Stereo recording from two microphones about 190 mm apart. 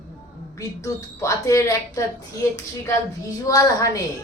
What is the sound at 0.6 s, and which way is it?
A woman's voice, 15° left (ahead or behind).